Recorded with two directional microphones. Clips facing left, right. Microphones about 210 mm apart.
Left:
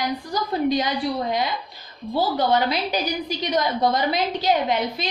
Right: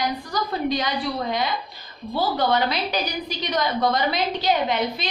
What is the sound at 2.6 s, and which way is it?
A woman's voice, 45° left (ahead or behind).